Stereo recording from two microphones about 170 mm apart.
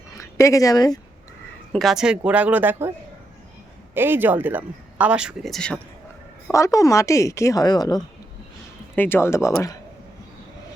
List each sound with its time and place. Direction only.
0.2 s speech: 20° left (ahead or behind)
1.7 s speech: centre (ahead or behind)
3.9 s speech: 10° right (ahead or behind)
6.5 s speech: 20° left (ahead or behind)